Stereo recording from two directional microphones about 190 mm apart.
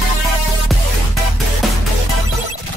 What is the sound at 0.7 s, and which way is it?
Music, centre (ahead or behind).